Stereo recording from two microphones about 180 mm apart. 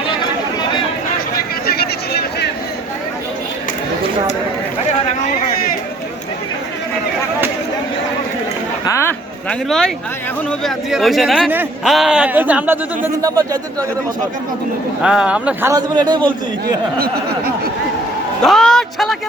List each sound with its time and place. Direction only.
1.6 s a sound: 60° left (ahead or behind)
8.8 s a sound: 15° left (ahead or behind)
9.6 s speech: centre (ahead or behind); by 13.6 s 20° right (ahead or behind)
15.0 s speech: 5° right (ahead or behind)
15.7 s a man's voice: 25° right (ahead or behind)
18.4 s speech: centre (ahead or behind)